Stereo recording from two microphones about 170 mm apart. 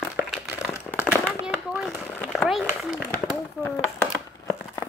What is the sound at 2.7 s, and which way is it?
Speech, 10° right (ahead or behind).